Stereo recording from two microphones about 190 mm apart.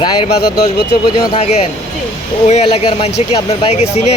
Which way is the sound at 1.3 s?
35° left (ahead or behind).